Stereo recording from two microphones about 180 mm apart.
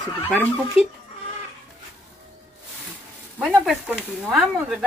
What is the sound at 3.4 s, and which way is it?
Speech, 5° right (ahead or behind).